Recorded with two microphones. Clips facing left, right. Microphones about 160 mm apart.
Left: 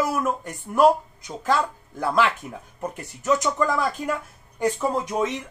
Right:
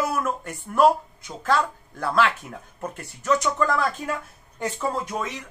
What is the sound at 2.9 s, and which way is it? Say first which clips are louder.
A man's voice: even; 20° left (ahead or behind).